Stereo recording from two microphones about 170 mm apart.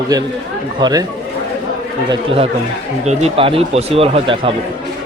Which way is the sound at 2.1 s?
35° right (ahead or behind).